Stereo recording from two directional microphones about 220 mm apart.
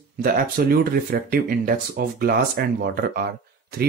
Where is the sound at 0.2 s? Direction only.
40° right (ahead or behind).